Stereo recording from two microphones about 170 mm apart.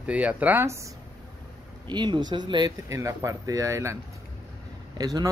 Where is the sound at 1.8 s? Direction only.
25° right (ahead or behind).